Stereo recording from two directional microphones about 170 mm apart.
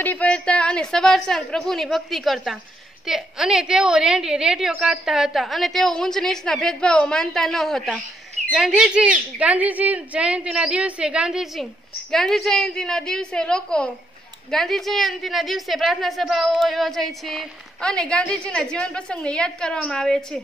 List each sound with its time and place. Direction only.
0.0 s a woman's voice: 10° left (ahead or behind)